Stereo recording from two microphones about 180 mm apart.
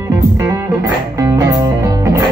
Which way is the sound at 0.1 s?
15° right (ahead or behind).